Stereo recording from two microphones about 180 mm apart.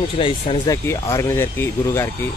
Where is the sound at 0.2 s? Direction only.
30° left (ahead or behind).